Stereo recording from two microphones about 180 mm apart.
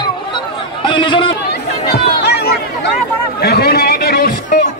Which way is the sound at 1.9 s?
65° left (ahead or behind).